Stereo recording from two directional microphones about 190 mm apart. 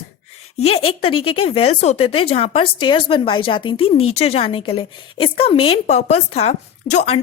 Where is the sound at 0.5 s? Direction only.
30° left (ahead or behind).